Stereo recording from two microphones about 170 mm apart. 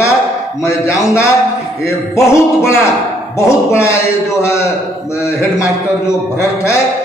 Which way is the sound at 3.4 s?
15° left (ahead or behind).